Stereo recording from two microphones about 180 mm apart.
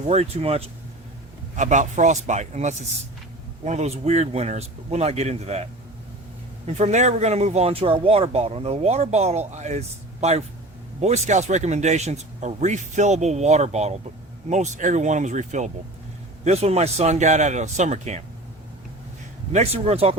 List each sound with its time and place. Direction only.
0.0 s speech: 35° right (ahead or behind)
6.7 s speech: 40° right (ahead or behind)
19.5 s speech: 35° right (ahead or behind)